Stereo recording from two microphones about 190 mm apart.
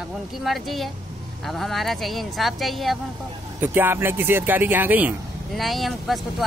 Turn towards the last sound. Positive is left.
turn(degrees=0)  # may be behind; listen again after turning